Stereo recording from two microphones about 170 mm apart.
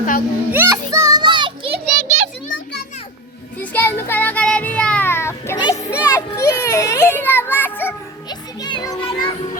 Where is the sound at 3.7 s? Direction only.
15° left (ahead or behind).